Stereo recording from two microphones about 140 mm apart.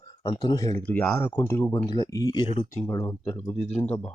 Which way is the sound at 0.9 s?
10° left (ahead or behind).